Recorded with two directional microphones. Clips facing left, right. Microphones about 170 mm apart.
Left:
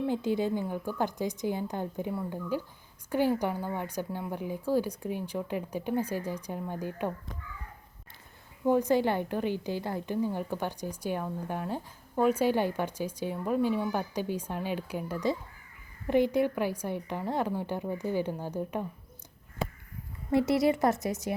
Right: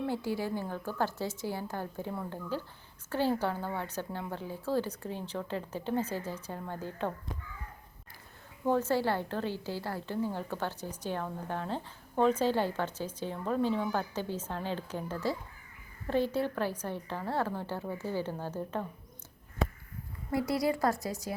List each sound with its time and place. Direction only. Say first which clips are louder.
0.0 s a woman's voice: left 4 dB; 20° left (ahead or behind)
8.6 s a woman's voice: left 3 dB; 15° left (ahead or behind)
20.3 s a woman's voice: left 5 dB; 25° left (ahead or behind)